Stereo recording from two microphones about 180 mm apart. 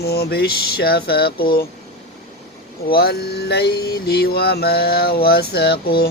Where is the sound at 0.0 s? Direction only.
60° left (ahead or behind).